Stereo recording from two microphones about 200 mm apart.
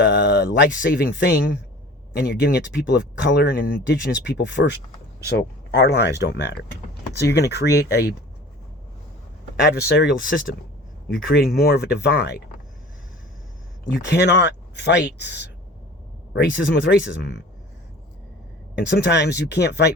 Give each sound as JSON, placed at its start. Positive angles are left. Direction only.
{"t": 0.0, "sound": "speech", "side_deg": 60}
{"t": 9.6, "sound": "speech", "side_deg": 55}
{"t": 14.1, "sound": "speech", "side_deg": 55}
{"t": 18.9, "sound": "speech", "side_deg": 55}